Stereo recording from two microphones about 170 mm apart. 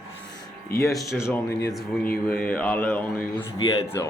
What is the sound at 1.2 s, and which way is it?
Speech, 15° left (ahead or behind).